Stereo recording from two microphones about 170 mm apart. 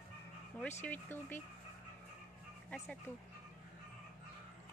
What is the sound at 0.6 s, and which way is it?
Speech, 10° left (ahead or behind).